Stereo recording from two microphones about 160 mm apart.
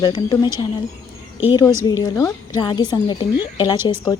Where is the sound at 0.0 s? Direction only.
30° left (ahead or behind).